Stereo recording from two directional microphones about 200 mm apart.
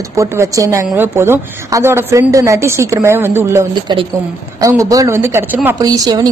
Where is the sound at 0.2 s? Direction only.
15° right (ahead or behind).